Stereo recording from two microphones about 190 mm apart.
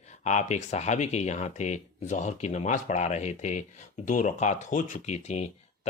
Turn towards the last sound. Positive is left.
turn(degrees=35)  # may be behind; listen again after turning